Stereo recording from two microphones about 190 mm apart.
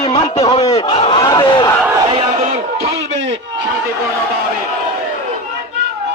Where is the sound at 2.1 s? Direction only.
30° right (ahead or behind).